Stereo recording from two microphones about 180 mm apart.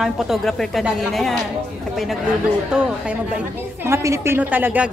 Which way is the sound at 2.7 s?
5° right (ahead or behind).